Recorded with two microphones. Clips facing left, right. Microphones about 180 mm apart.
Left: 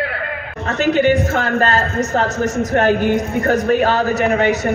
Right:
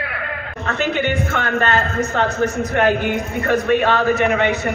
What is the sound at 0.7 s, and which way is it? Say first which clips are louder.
A man's voice: left 6 dB; 40° left (ahead or behind).